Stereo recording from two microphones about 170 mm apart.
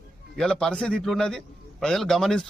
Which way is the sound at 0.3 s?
5° left (ahead or behind).